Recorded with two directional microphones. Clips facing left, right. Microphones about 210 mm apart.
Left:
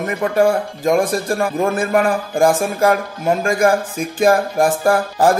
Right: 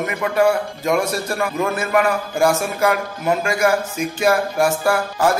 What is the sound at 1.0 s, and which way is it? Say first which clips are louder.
Speech: left 3 dB; 50° left (ahead or behind).